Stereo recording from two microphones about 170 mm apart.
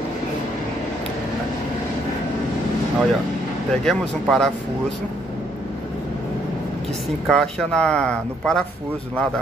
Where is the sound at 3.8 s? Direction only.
5° left (ahead or behind).